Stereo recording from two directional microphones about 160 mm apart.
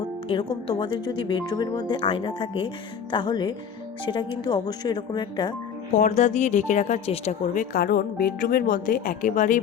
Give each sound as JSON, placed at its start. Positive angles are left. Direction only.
{"t": 0.3, "sound": "a woman's voice", "side_deg": 30}
{"t": 5.9, "sound": "speech", "side_deg": 50}